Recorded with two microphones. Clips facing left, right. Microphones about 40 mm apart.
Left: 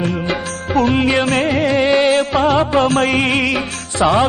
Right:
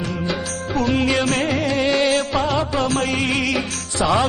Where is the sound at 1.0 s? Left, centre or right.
Left.